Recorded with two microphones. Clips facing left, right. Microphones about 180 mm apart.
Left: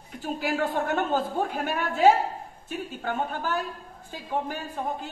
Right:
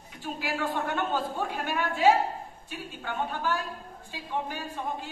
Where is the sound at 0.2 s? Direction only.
45° left (ahead or behind).